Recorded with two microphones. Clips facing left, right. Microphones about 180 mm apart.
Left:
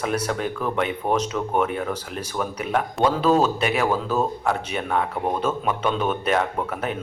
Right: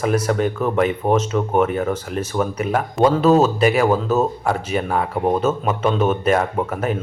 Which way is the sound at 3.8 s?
25° right (ahead or behind).